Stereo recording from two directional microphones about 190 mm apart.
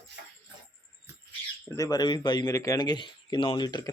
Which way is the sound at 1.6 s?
20° left (ahead or behind).